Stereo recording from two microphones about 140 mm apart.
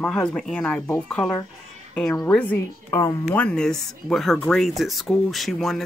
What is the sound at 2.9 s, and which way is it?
Speech, 25° left (ahead or behind).